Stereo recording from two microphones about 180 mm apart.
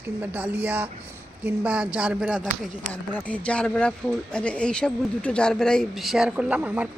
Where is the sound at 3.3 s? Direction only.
5° left (ahead or behind).